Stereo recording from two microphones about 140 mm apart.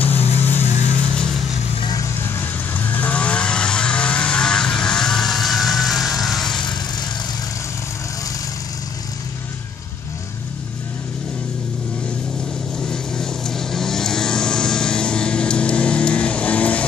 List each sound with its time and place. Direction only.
0.4 s a sound: 15° left (ahead or behind)
0.8 s vehicle: 10° left (ahead or behind)
1.8 s vehicle: 30° left (ahead or behind)
2.2 s vehicle: 15° left (ahead or behind)
6.6 s vehicle: 35° left (ahead or behind)
12.8 s vehicle: 5° left (ahead or behind)